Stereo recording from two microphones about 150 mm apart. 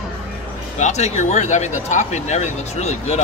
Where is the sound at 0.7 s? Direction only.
50° left (ahead or behind).